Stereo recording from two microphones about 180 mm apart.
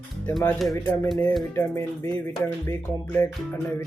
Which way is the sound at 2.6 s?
15° left (ahead or behind).